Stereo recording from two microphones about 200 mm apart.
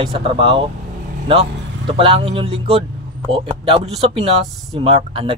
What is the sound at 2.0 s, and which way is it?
Speech, 30° right (ahead or behind).